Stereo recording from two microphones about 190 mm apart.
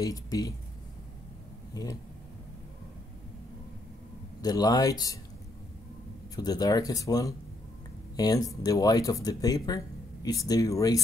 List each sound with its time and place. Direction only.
0.0 s speech: 20° left (ahead or behind)
1.7 s speech: 20° left (ahead or behind)
4.4 s speech: 20° left (ahead or behind)
6.3 s speech: 20° left (ahead or behind)